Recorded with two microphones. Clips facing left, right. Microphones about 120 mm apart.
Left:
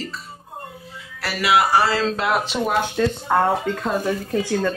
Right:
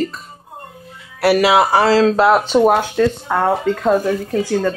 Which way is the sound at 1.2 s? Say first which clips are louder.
Right 14 dB; 65° right (ahead or behind).